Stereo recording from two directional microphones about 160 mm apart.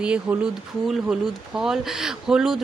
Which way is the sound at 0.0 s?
5° right (ahead or behind).